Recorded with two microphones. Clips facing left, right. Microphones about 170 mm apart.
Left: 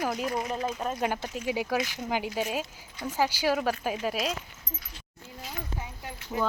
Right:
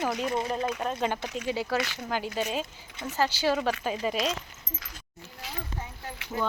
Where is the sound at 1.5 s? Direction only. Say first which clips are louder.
Left 1 dB; 15° left (ahead or behind).